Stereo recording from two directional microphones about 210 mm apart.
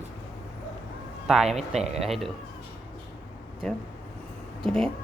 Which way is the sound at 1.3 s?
Centre (ahead or behind).